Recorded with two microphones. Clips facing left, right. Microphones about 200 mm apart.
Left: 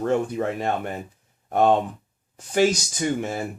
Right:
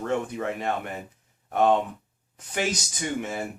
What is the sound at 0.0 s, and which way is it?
Speech, 35° left (ahead or behind).